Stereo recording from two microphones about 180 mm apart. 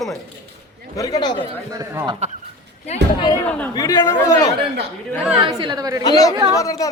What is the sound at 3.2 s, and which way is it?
A woman's voice, 20° left (ahead or behind).